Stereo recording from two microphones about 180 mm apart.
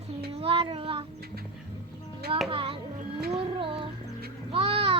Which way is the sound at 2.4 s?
30° right (ahead or behind).